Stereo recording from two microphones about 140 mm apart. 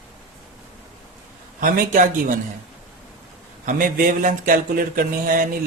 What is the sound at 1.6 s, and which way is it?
Speech, 80° right.